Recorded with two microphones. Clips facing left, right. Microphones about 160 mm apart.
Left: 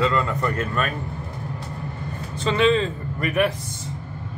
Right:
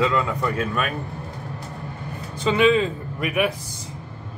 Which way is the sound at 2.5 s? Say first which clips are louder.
Right 1 dB; 10° right (ahead or behind).